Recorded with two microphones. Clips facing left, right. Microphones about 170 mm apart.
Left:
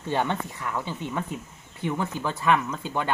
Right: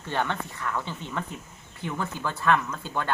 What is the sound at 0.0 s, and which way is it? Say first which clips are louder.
A woman's voice: left 3 dB; 15° left (ahead or behind).